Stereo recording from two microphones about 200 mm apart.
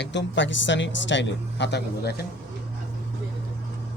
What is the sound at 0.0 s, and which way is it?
Speech, 60° left (ahead or behind).